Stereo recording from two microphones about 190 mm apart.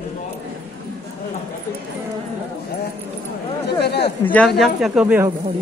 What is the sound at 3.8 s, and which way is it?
Speech, 60° left (ahead or behind).